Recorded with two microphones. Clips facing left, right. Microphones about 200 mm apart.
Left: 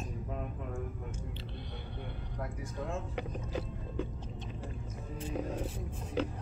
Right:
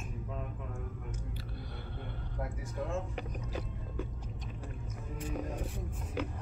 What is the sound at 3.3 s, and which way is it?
Boat, 25° left (ahead or behind).